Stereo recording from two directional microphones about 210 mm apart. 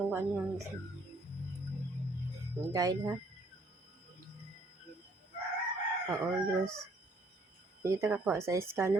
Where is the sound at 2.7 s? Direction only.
15° right (ahead or behind).